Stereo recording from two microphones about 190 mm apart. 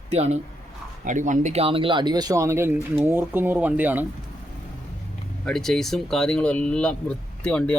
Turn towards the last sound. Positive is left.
turn(degrees=5)  # may be behind; listen again after turning